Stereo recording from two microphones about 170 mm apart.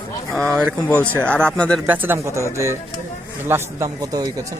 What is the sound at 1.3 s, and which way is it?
Speech, 5° left (ahead or behind).